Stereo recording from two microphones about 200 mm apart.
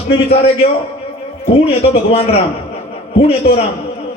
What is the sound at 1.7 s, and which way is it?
A man's voice, 30° left (ahead or behind).